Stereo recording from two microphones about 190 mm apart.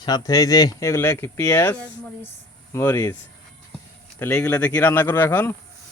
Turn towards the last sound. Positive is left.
turn(degrees=10)  # may be behind; listen again after turning